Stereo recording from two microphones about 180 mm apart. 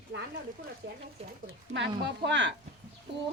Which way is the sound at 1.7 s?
80° right.